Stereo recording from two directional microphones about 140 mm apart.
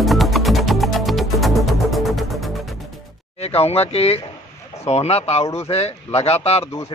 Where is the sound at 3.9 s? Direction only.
45° left (ahead or behind).